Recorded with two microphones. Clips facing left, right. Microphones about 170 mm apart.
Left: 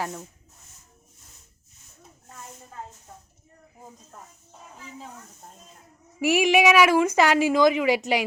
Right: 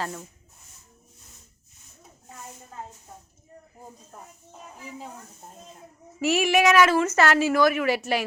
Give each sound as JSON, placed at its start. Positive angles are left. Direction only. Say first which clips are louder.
{"t": 0.0, "sound": "speech", "louder": "left 1 dB", "side_deg": 5}
{"t": 4.1, "sound": "speech", "louder": "right 2 dB", "side_deg": -10}
{"t": 6.1, "sound": "speech", "louder": "left 2 dB", "side_deg": 15}